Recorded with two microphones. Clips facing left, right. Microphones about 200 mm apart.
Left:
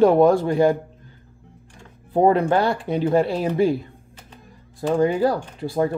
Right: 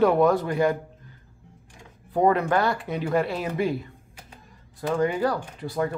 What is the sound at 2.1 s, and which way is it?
Speech, 30° left (ahead or behind).